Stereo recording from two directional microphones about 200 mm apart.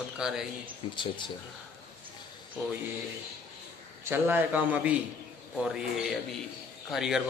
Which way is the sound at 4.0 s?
10° right (ahead or behind).